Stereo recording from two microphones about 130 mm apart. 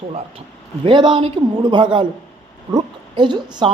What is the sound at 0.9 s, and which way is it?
A woman's voice, 40° right (ahead or behind).